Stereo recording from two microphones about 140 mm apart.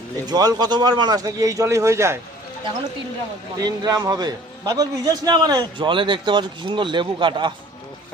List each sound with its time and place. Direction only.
0.3 s speech: 30° right (ahead or behind)
3.6 s a man's voice: 25° right (ahead or behind)